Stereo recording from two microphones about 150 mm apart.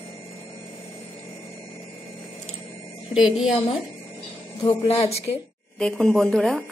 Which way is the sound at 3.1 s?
5° right (ahead or behind).